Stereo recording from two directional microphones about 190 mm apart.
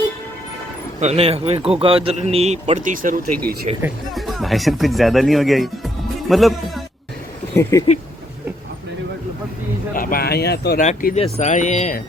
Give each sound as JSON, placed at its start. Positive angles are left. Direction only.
{"t": 0.9, "sound": "a man's voice", "side_deg": -35}
{"t": 3.8, "sound": "speech", "side_deg": -5}
{"t": 7.5, "sound": "speech", "side_deg": 15}
{"t": 9.9, "sound": "speech", "side_deg": 50}
{"t": 10.8, "sound": "speech", "side_deg": 40}